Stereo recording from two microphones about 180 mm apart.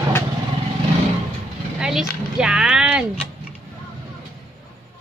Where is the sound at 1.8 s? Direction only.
5° right (ahead or behind).